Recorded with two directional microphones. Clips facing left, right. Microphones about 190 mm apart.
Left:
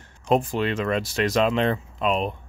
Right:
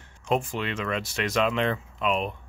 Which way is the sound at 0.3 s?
35° left (ahead or behind).